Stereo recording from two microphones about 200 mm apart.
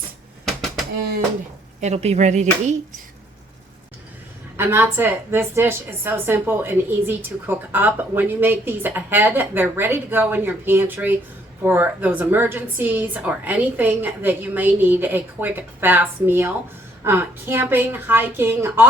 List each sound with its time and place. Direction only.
0.4 s a sound: centre (ahead or behind)
1.8 s speech: 35° right (ahead or behind)
4.5 s a woman's voice: 10° right (ahead or behind)